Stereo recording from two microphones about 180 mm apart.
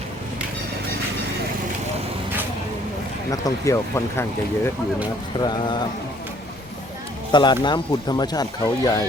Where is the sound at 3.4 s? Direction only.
15° left (ahead or behind).